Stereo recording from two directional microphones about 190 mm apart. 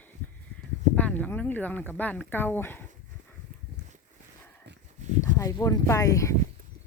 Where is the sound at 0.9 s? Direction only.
10° left (ahead or behind).